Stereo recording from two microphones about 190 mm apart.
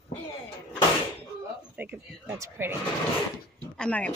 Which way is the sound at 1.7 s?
10° right (ahead or behind).